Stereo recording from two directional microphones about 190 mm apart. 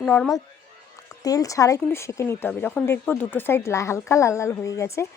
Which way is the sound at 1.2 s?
20° left (ahead or behind).